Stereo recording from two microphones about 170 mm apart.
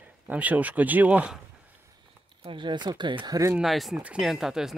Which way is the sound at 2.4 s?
30° right (ahead or behind).